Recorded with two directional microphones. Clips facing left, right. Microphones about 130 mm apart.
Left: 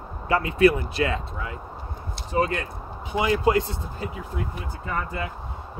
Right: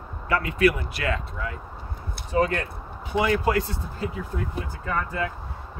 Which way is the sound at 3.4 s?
20° left (ahead or behind).